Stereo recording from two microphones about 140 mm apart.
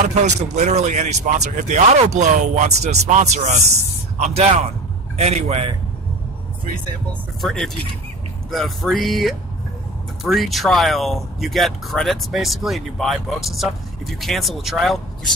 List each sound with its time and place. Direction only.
0.0 s a man's voice: 55° right (ahead or behind)
7.4 s speech: 5° left (ahead or behind)